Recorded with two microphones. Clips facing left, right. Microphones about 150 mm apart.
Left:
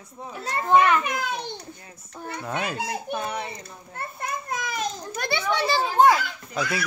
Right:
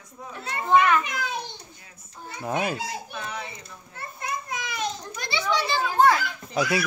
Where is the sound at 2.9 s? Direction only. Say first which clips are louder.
Left 5 dB; 50° left (ahead or behind).